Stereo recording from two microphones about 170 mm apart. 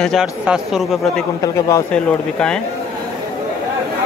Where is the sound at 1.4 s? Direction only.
20° left (ahead or behind).